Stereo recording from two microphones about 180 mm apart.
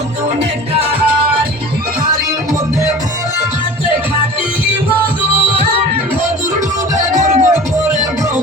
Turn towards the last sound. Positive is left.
turn(degrees=-40)  # may be behind; listen again after turning